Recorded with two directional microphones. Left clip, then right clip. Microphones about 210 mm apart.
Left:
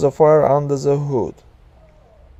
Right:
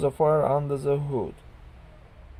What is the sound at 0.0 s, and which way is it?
Speech, 30° left (ahead or behind).